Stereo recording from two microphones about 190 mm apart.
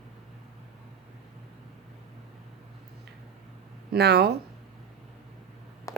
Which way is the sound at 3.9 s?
60° right (ahead or behind).